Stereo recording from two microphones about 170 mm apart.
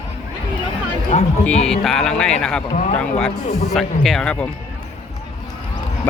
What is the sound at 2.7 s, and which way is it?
Speech, 40° left (ahead or behind).